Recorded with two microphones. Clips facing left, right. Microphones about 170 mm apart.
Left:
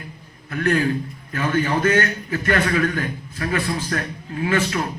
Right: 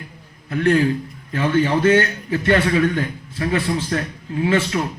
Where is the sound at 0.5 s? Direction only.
25° right (ahead or behind).